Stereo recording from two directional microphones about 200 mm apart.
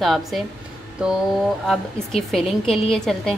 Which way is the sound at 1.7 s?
Centre (ahead or behind).